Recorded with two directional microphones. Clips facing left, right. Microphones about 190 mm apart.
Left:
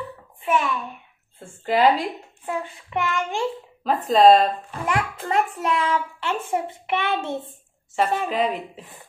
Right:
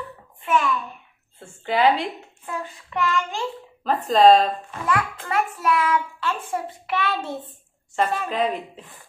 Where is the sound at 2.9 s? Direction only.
15° left (ahead or behind).